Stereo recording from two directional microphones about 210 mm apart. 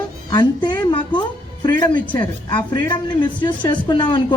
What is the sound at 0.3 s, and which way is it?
Speech, 20° left (ahead or behind).